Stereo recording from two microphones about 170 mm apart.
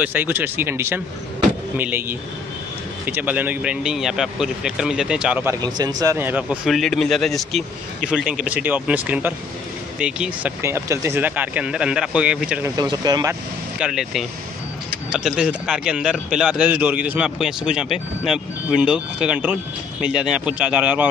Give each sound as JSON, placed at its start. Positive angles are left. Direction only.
{"t": 0.0, "sound": "a man's voice", "side_deg": -10}
{"t": 5.6, "sound": "a man's voice", "side_deg": -25}
{"t": 12.7, "sound": "speech", "side_deg": -25}
{"t": 13.7, "sound": "a man's voice", "side_deg": -5}